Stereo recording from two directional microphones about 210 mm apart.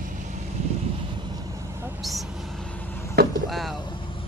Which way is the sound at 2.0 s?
Centre (ahead or behind).